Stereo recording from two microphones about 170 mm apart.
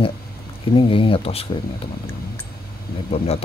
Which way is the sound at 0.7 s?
30° left (ahead or behind).